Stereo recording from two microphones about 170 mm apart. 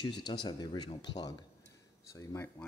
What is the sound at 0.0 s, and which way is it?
Speech, 25° left (ahead or behind).